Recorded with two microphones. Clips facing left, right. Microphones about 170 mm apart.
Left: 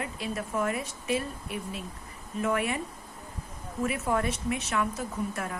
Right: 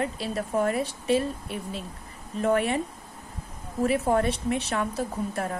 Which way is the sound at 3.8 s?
35° right (ahead or behind).